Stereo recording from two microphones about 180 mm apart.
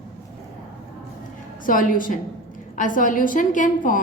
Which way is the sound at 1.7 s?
50° left (ahead or behind).